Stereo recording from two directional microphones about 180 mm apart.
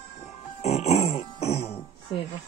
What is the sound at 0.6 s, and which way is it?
Music, 35° left (ahead or behind).